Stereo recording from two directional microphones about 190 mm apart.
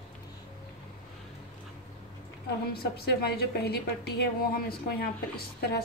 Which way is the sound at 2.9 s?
55° left (ahead or behind).